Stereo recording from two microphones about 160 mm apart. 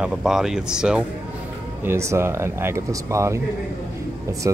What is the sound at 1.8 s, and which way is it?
Speech, 15° right (ahead or behind).